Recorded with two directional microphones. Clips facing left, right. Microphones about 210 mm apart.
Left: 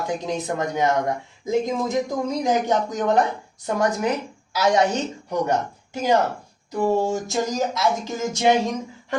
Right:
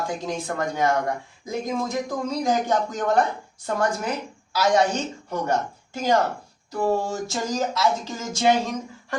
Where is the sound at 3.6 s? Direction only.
20° left (ahead or behind).